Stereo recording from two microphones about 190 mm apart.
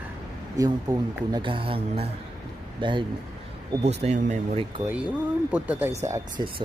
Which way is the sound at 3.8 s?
35° right (ahead or behind).